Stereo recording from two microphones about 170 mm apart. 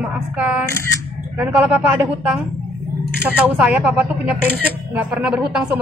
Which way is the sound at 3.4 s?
5° right (ahead or behind).